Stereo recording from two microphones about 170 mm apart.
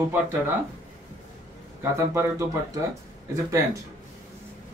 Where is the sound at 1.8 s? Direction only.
15° right (ahead or behind).